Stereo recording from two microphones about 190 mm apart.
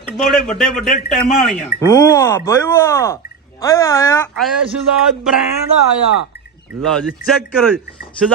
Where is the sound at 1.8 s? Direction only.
15° left (ahead or behind).